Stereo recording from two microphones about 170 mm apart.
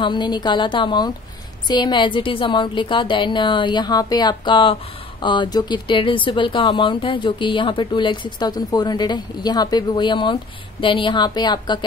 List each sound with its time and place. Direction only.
0.0 s speech: 25° left (ahead or behind)